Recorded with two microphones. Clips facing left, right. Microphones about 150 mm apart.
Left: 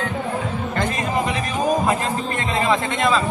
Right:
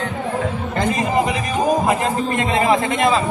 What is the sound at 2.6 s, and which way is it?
Speech, 20° right (ahead or behind).